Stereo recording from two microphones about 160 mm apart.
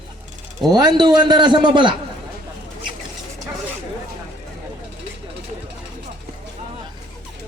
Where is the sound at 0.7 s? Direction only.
25° right (ahead or behind).